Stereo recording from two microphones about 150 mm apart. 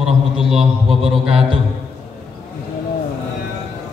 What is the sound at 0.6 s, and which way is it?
Speech, 40° right (ahead or behind).